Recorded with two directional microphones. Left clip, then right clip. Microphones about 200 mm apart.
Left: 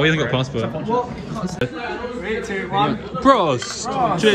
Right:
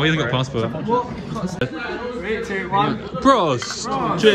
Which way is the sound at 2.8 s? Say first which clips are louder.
Left 4 dB; 15° right (ahead or behind).